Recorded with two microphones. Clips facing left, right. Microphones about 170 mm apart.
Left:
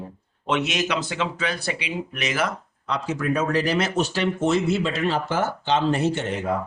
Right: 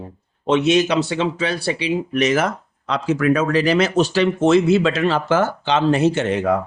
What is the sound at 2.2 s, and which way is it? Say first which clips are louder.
Speech: right 6 dB; 45° right (ahead or behind).